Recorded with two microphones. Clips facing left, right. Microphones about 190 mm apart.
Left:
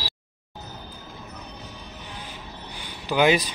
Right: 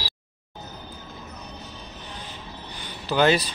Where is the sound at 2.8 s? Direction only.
15° left (ahead or behind).